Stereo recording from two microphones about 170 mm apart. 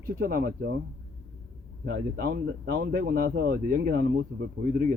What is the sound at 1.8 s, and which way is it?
Speech, 65° right (ahead or behind).